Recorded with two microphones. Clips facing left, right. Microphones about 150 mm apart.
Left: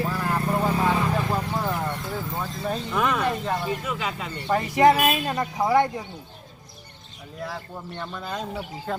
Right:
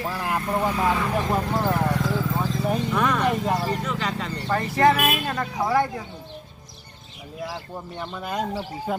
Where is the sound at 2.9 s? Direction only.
5° left (ahead or behind).